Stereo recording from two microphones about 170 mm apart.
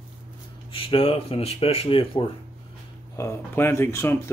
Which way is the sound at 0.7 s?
35° left (ahead or behind).